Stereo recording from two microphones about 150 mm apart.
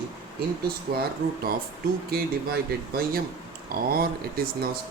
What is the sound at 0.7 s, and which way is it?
Speech, 90° right.